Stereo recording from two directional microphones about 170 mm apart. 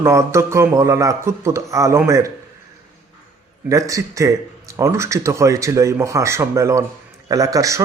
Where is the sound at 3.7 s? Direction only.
20° right (ahead or behind).